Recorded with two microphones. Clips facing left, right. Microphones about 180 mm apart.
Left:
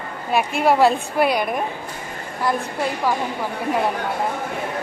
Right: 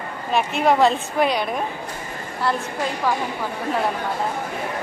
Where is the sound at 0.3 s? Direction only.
10° left (ahead or behind).